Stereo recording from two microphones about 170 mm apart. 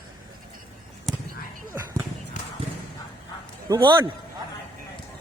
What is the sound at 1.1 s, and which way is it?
Basketball bounce, centre (ahead or behind).